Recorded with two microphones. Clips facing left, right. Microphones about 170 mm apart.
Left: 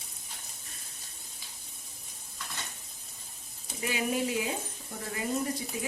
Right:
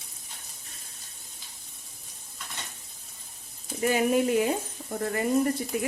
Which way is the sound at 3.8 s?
50° right (ahead or behind).